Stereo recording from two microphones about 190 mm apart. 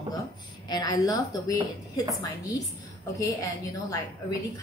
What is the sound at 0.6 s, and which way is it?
A woman's voice, 20° left (ahead or behind).